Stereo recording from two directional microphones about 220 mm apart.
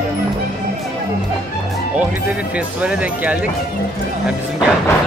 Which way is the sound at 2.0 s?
5° right (ahead or behind).